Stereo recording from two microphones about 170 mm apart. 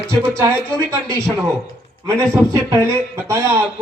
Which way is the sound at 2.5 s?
15° right (ahead or behind).